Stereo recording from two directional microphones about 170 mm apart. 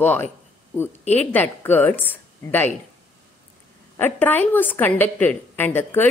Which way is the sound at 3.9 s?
10° left (ahead or behind).